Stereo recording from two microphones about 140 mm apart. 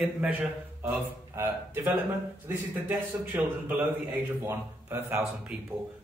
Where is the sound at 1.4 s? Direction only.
15° right (ahead or behind).